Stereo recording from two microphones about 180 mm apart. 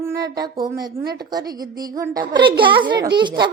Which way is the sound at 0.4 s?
20° right (ahead or behind).